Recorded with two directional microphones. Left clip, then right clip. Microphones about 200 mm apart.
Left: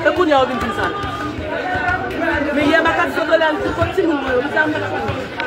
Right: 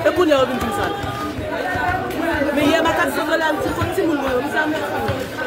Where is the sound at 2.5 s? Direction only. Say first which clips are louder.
Left 3 dB; 20° right (ahead or behind).